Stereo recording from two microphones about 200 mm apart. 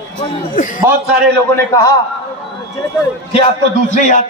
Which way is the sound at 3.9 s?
40° left (ahead or behind).